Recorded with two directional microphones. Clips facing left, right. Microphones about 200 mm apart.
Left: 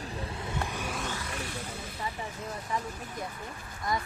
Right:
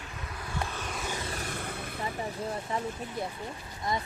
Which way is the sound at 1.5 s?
55° right (ahead or behind).